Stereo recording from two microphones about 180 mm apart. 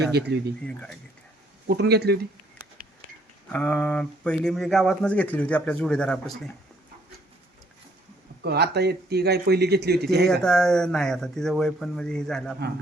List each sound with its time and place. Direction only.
0.1 s speech: 65° right (ahead or behind)
0.6 s speech: 5° left (ahead or behind)
1.6 s speech: 65° right (ahead or behind)
3.5 s speech: 5° left (ahead or behind)
8.4 s speech: 65° right (ahead or behind)
10.4 s speech: 5° left (ahead or behind)